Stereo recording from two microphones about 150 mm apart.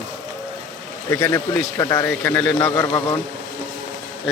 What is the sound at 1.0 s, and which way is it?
Speech, 20° left (ahead or behind).